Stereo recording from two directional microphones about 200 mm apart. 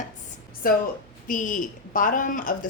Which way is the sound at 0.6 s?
45° left (ahead or behind).